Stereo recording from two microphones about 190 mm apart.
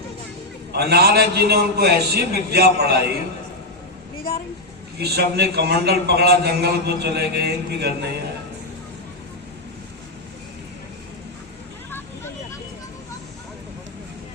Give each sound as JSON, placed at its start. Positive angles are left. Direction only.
{"t": 0.7, "sound": "a man's voice", "side_deg": -55}
{"t": 4.9, "sound": "a man's voice", "side_deg": -55}
{"t": 11.9, "sound": "vehicle", "side_deg": 10}